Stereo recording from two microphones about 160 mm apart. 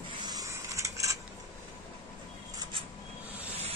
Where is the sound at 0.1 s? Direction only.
25° right (ahead or behind).